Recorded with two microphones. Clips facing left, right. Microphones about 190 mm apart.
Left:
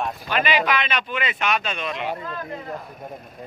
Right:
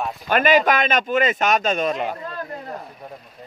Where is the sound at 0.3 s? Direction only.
45° right (ahead or behind).